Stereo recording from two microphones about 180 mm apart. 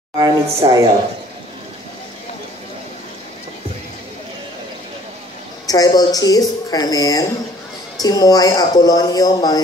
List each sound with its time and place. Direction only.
0.2 s speech: 20° right (ahead or behind)
5.7 s speech: 20° left (ahead or behind)